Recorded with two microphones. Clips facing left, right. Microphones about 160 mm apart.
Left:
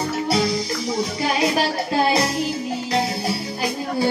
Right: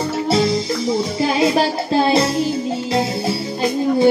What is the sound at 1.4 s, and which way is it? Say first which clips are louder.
Speech: right 5 dB; 25° right (ahead or behind).